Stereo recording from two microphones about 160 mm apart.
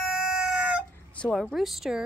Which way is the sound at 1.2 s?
5° left (ahead or behind).